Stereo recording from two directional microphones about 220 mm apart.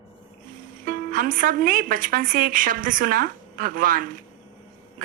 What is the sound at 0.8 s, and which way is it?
A woman's voice, 40° right (ahead or behind).